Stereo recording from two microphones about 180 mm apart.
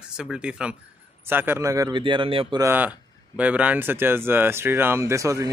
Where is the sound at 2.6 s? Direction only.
10° right (ahead or behind).